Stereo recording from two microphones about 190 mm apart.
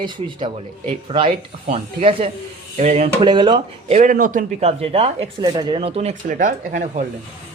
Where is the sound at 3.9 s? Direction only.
40° right (ahead or behind).